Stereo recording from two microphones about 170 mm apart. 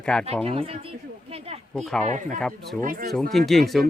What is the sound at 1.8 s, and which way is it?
Speech, 5° left (ahead or behind).